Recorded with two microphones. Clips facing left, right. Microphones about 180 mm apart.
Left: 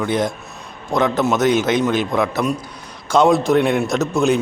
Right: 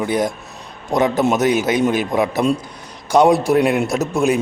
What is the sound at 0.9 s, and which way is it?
Speech, 15° right (ahead or behind).